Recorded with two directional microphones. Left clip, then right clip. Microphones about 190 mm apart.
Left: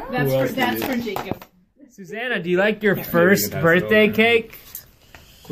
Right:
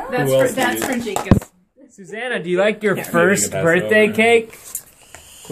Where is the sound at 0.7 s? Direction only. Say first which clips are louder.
Right 3 dB; 45° right (ahead or behind).